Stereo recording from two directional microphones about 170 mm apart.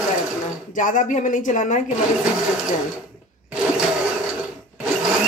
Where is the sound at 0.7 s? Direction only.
50° left (ahead or behind).